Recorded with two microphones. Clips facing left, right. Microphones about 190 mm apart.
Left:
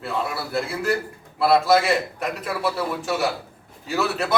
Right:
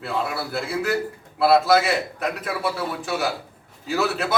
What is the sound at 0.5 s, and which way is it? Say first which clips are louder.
A man's voice: left 1 dB; centre (ahead or behind).